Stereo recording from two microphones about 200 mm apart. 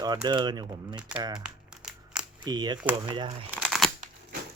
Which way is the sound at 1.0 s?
5° right (ahead or behind).